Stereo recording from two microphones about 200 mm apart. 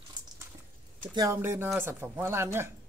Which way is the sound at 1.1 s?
15° right (ahead or behind).